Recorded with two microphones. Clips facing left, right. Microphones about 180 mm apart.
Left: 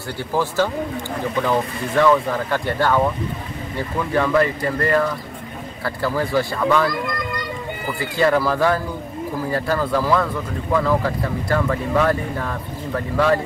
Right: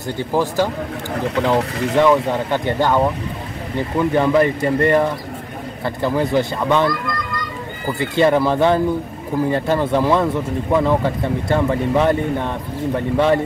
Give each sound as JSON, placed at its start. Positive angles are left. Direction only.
{"t": 0.2, "sound": "speech", "side_deg": -15}
{"t": 1.3, "sound": "speech", "side_deg": -80}
{"t": 2.0, "sound": "speech", "side_deg": -20}
{"t": 8.0, "sound": "speech", "side_deg": -25}